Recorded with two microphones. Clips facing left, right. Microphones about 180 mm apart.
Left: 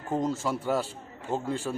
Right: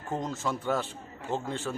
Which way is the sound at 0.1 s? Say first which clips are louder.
Left 4 dB; 10° left (ahead or behind).